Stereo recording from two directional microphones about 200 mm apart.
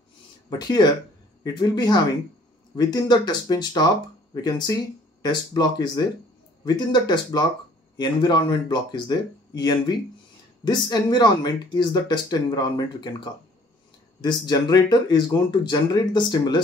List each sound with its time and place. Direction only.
0.5 s speech: 20° left (ahead or behind)